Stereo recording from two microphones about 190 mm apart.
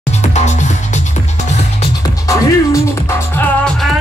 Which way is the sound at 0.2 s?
35° left (ahead or behind).